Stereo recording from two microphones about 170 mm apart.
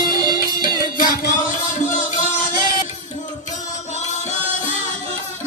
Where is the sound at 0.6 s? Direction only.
55° left (ahead or behind).